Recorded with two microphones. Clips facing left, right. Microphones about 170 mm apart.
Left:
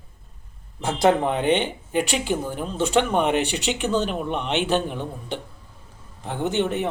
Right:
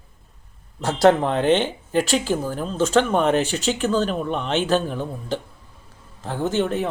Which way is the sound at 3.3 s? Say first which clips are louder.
Right 2 dB; 40° right (ahead or behind).